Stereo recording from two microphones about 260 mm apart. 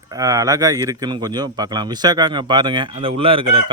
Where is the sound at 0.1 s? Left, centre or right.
Centre.